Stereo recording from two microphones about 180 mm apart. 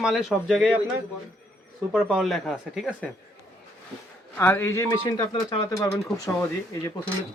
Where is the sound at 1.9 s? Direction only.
Centre (ahead or behind).